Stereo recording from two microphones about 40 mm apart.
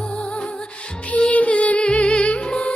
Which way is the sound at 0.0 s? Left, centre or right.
Left.